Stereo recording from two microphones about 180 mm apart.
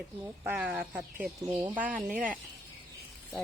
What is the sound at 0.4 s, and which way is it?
Speech, 5° right (ahead or behind).